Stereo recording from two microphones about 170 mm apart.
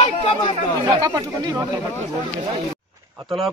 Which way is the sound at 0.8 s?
20° right (ahead or behind).